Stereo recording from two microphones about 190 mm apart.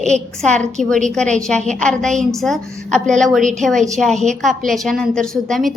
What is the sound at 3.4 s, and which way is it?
Speech, 40° right (ahead or behind).